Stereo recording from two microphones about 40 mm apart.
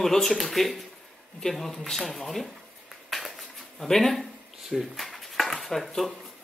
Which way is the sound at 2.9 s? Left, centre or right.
Centre.